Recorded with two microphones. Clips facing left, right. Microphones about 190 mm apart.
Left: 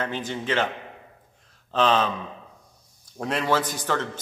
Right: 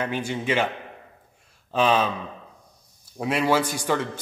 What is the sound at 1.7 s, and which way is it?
Speech, 10° right (ahead or behind).